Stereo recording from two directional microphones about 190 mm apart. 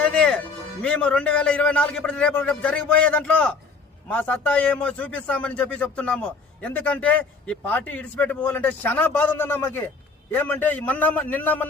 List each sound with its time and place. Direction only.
0.0 s music: 5° left (ahead or behind)
0.8 s a man's voice: 5° left (ahead or behind)